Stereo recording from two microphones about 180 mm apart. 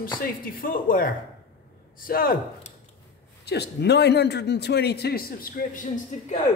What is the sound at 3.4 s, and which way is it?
A man's voice, 65° left (ahead or behind).